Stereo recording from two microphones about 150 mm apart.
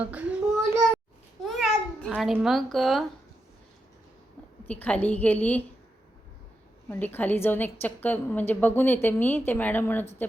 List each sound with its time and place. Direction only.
0.0 s child singing: 10° right (ahead or behind)
1.5 s a sound: centre (ahead or behind)
2.3 s speech: centre (ahead or behind)
4.6 s a woman's voice: 10° left (ahead or behind)
6.9 s a woman's voice: 15° left (ahead or behind)